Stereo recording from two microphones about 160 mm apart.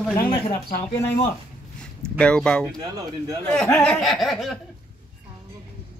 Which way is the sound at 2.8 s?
25° right (ahead or behind).